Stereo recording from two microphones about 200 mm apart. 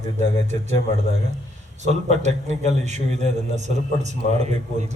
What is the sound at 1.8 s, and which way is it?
A man's voice, 35° right (ahead or behind).